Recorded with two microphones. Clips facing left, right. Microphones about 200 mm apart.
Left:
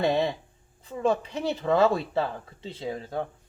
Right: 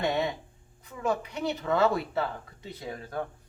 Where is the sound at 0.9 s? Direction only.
30° left (ahead or behind).